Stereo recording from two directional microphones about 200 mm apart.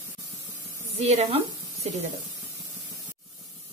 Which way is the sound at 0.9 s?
30° right (ahead or behind).